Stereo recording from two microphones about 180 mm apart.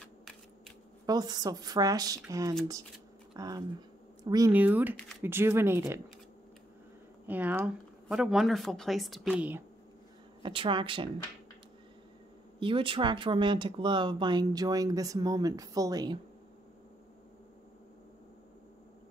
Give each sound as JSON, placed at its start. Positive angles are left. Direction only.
{"t": 1.0, "sound": "speech", "side_deg": -20}
{"t": 4.5, "sound": "speech", "side_deg": -10}
{"t": 7.2, "sound": "speech", "side_deg": -10}
{"t": 10.4, "sound": "speech", "side_deg": -30}
{"t": 12.5, "sound": "speech", "side_deg": -30}